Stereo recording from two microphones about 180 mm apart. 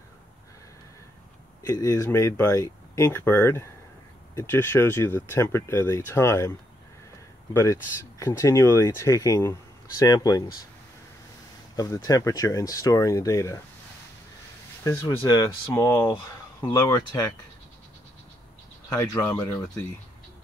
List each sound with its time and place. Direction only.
1.6 s speech: 20° left (ahead or behind)
7.5 s speech: 15° left (ahead or behind)
11.7 s speech: 20° left (ahead or behind)
14.8 s speech: 15° left (ahead or behind)
18.9 s speech: 20° left (ahead or behind)